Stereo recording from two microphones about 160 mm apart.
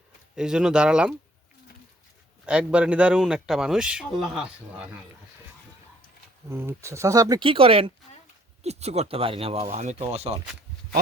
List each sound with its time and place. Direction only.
0.3 s a man's voice: 5° right (ahead or behind)
2.5 s a man's voice: 5° right (ahead or behind)
6.5 s speech: 15° right (ahead or behind); by 10.3 s 40° right (ahead or behind)